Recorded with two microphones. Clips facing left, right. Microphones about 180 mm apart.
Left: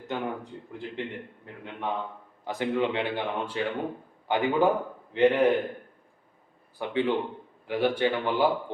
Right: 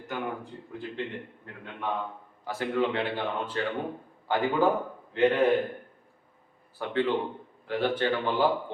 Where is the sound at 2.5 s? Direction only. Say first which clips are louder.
Left 1 dB; 15° left (ahead or behind).